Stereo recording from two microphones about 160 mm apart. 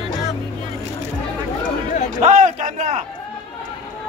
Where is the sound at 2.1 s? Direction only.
50° right (ahead or behind).